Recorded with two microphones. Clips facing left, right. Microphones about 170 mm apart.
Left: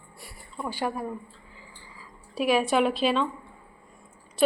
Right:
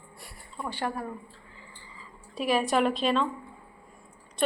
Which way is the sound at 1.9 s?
Centre (ahead or behind).